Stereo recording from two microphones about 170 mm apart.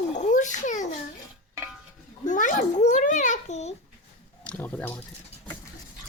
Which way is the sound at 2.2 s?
50° left (ahead or behind).